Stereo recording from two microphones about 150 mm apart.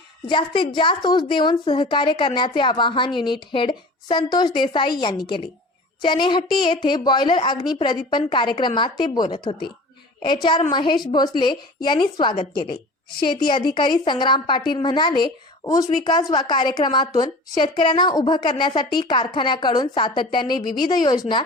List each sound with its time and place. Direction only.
0.3 s a woman's voice: 30° left (ahead or behind)